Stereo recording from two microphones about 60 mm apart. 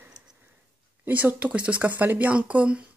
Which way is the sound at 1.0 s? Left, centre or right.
Right.